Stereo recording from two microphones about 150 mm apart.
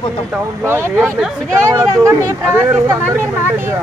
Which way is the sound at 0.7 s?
15° right (ahead or behind).